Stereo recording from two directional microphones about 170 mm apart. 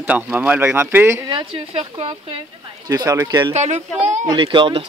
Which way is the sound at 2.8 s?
20° right (ahead or behind).